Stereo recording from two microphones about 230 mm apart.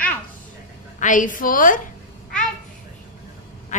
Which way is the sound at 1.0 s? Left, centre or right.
Left.